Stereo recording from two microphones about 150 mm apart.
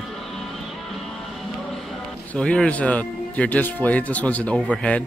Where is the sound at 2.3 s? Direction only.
5° left (ahead or behind).